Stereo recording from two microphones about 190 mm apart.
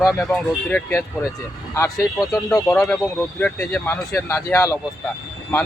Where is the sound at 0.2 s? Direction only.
5° left (ahead or behind).